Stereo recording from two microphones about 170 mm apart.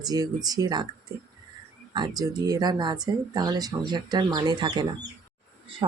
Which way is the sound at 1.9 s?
25° right (ahead or behind).